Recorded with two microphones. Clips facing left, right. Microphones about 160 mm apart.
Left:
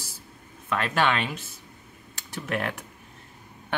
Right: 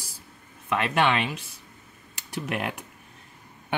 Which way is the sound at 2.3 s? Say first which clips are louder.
Even; 15° right (ahead or behind).